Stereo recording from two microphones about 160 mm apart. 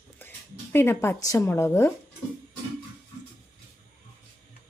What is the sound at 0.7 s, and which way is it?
A woman's voice, 15° left (ahead or behind).